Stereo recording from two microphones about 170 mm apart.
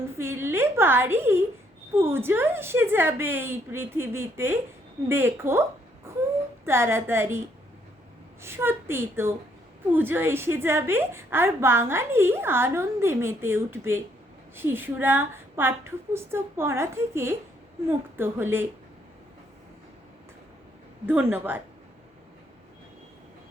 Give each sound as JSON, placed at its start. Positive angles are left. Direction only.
{"t": 0.2, "sound": "a woman's voice", "side_deg": -15}
{"t": 6.1, "sound": "wail", "side_deg": -15}
{"t": 6.7, "sound": "a woman's voice", "side_deg": -15}
{"t": 21.1, "sound": "a woman's voice", "side_deg": -10}